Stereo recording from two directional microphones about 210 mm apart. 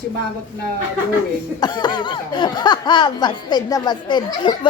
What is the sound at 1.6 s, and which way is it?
Speech, 20° left (ahead or behind).